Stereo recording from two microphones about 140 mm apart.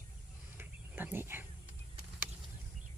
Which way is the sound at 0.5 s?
15° right (ahead or behind).